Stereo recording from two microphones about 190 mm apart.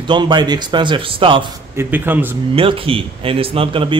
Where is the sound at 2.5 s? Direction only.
30° right (ahead or behind).